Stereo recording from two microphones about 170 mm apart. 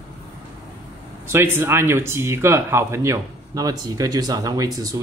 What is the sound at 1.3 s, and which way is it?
Speech, 15° right (ahead or behind).